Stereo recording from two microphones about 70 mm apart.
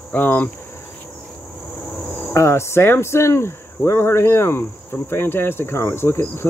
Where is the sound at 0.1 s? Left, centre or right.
Left.